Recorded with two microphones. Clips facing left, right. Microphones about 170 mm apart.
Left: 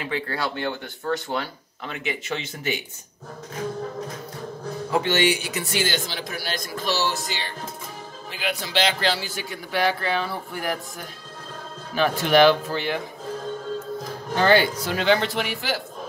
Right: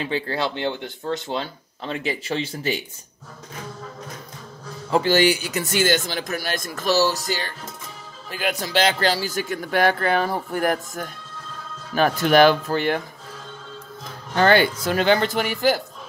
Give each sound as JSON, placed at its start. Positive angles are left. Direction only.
{"t": 0.0, "sound": "speech", "side_deg": -25}
{"t": 4.9, "sound": "speech", "side_deg": -35}
{"t": 14.5, "sound": "speech", "side_deg": -50}